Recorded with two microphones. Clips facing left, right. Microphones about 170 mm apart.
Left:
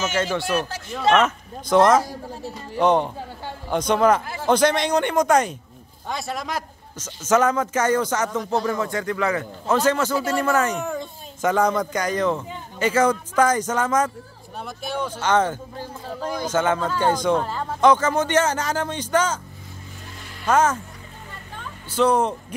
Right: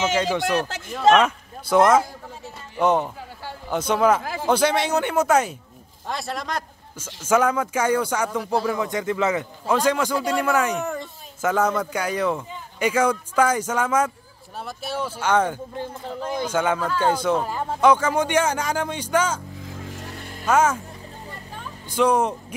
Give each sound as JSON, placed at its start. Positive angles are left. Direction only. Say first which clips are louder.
{"t": 0.1, "sound": "speech", "louder": "right 1 dB", "side_deg": -15}
{"t": 7.0, "sound": "speech", "louder": "left 1 dB", "side_deg": -10}
{"t": 8.8, "sound": "a man's voice", "louder": "right 1 dB", "side_deg": -20}
{"t": 10.1, "sound": "speech", "louder": "even", "side_deg": 5}
{"t": 10.4, "sound": "speech", "louder": "even", "side_deg": -10}
{"t": 20.4, "sound": "speech", "louder": "even", "side_deg": -10}
{"t": 21.9, "sound": "speech", "louder": "even", "side_deg": -10}